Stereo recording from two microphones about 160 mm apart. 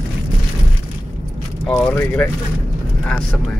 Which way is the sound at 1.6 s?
10° left (ahead or behind).